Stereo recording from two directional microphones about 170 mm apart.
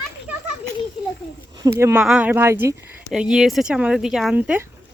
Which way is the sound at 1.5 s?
20° right (ahead or behind).